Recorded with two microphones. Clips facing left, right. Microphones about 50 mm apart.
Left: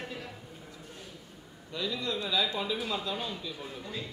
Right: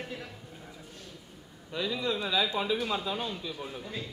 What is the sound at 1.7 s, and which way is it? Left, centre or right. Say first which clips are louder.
Speech: right 2 dB; centre.